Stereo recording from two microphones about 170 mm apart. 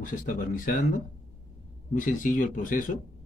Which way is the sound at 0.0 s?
50° left (ahead or behind).